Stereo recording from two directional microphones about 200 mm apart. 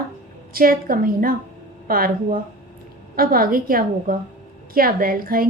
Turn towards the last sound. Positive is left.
turn(degrees=-45)  # may be behind; listen again after turning